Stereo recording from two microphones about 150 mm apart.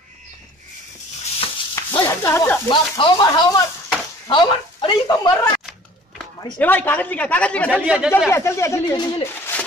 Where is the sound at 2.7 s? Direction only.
30° left (ahead or behind).